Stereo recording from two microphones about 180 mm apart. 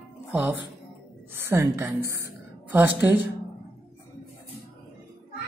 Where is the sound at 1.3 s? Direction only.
15° right (ahead or behind).